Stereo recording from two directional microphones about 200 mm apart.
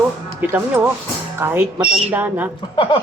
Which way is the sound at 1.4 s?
10° right (ahead or behind).